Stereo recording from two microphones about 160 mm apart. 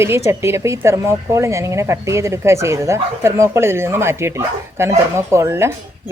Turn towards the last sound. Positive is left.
turn(degrees=-15)  # may be behind; listen again after turning